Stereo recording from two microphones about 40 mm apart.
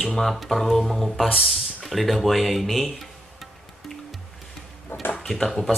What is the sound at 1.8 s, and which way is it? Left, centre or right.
Music, centre.